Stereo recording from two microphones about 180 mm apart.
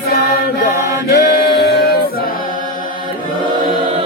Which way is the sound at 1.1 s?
60° left (ahead or behind).